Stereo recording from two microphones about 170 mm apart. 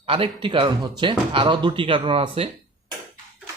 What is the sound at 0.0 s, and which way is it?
Speech, 35° right (ahead or behind).